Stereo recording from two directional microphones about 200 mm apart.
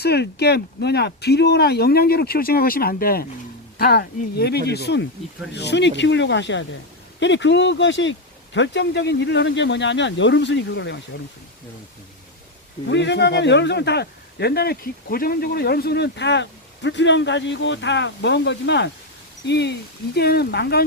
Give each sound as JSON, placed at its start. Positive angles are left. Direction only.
{"t": 0.0, "sound": "speech", "side_deg": 55}
{"t": 12.9, "sound": "speech", "side_deg": 60}